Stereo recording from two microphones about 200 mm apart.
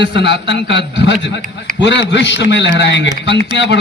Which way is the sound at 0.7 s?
60° left (ahead or behind).